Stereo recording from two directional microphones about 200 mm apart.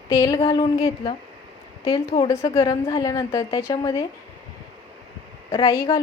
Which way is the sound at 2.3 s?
15° left (ahead or behind).